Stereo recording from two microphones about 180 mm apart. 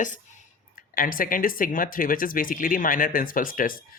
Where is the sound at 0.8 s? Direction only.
50° left (ahead or behind).